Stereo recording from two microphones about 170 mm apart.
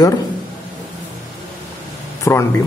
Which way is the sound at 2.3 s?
15° left (ahead or behind).